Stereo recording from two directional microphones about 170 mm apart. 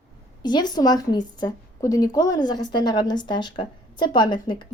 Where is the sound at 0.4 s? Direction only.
25° left (ahead or behind).